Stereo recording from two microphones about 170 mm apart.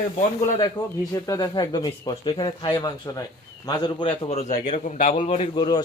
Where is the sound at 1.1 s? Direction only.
20° left (ahead or behind).